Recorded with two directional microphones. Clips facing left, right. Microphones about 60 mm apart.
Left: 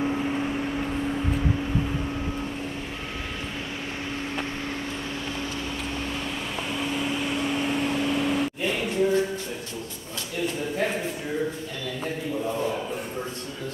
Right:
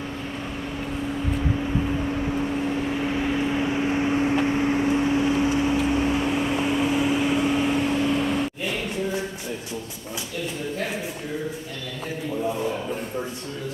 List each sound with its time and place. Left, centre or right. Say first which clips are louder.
0.0 s vehicle: left 6 dB; centre
1.3 s vehicle: right 1 dB; centre
3.0 s vehicle: right 10 dB; centre